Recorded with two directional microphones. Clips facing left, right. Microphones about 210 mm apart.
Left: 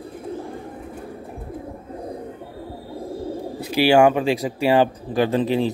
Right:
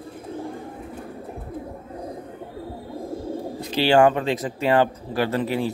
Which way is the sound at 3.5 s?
10° left (ahead or behind).